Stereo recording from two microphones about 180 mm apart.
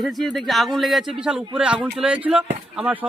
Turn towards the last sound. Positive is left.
turn(degrees=-10)  # may be behind; listen again after turning